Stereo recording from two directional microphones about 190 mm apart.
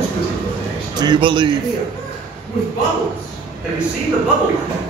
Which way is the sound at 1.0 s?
25° right (ahead or behind).